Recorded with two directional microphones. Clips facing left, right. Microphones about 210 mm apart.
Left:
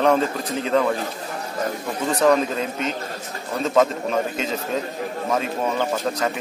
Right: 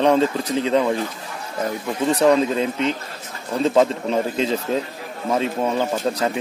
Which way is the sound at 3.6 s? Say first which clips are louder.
Right 2 dB; 30° right (ahead or behind).